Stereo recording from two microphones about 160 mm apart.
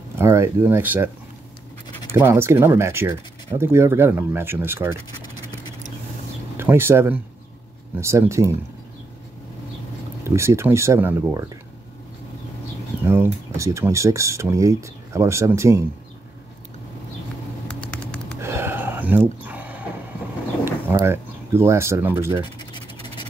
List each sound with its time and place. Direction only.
0.2 s speech: 15° right (ahead or behind)
6.5 s speech: 15° right (ahead or behind)
10.2 s speech: 15° right (ahead or behind)
13.0 s speech: 15° right (ahead or behind)
17.7 s typing: 5° left (ahead or behind)
18.4 s a sound: 15° right (ahead or behind)
20.6 s speech: 15° right (ahead or behind)
22.4 s scratch: 25° left (ahead or behind)